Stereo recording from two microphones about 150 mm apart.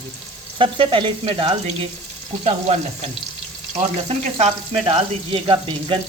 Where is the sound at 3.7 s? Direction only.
45° right (ahead or behind).